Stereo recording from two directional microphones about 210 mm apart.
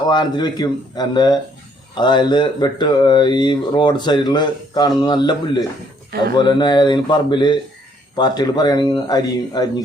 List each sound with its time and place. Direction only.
0.1 s speech: 20° left (ahead or behind)
6.1 s speech: 50° right (ahead or behind)
6.3 s speech: 20° left (ahead or behind)